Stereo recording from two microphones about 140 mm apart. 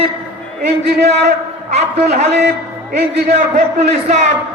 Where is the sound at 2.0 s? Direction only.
55° right (ahead or behind).